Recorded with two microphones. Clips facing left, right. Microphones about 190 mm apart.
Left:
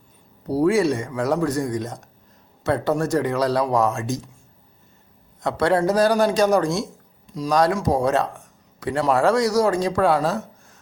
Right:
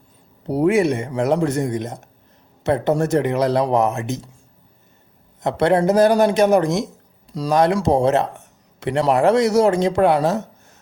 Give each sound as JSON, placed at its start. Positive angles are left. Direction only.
{"t": 0.4, "sound": "speech", "side_deg": -20}
{"t": 5.4, "sound": "speech", "side_deg": -20}
{"t": 7.3, "sound": "speech", "side_deg": -30}